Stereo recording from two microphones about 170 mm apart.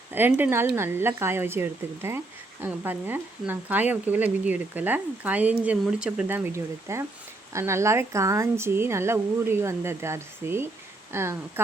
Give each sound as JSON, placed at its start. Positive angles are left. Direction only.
{"t": 0.1, "sound": "a woman's voice", "side_deg": -10}